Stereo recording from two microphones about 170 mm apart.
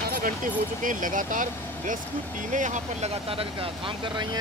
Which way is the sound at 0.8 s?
50° right (ahead or behind).